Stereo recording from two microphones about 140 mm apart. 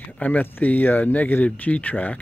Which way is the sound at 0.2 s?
10° left (ahead or behind).